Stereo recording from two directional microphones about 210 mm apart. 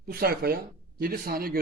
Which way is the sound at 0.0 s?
45° right (ahead or behind).